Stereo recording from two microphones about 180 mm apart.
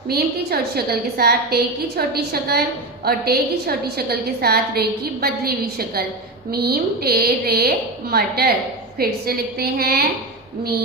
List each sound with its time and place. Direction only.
0.1 s a woman's voice: 60° right (ahead or behind)